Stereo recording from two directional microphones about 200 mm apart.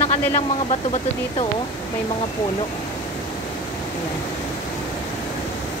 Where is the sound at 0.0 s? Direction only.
30° left (ahead or behind).